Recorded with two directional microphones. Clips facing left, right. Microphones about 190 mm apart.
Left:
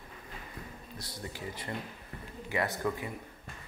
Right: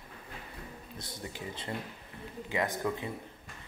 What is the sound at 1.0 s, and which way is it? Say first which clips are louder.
Speech: even; 20° right (ahead or behind).